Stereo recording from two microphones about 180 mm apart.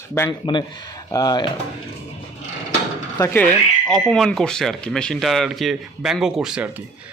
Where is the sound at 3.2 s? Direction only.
10° left (ahead or behind); by 6.7 s 5° right (ahead or behind).